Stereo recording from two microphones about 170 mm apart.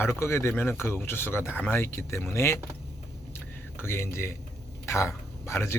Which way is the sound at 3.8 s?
15° left (ahead or behind).